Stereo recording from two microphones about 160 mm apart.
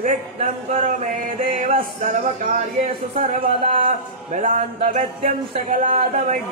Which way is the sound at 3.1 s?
35° right (ahead or behind).